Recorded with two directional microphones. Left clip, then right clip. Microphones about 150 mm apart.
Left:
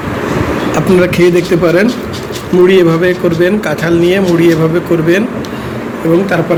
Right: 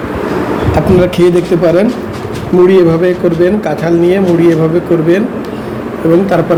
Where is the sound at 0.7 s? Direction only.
5° right (ahead or behind).